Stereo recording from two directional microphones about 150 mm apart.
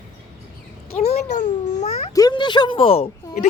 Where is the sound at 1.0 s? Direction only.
45° left (ahead or behind).